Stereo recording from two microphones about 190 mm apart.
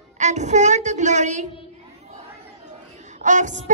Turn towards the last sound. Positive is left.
turn(degrees=-40)  # may be behind; listen again after turning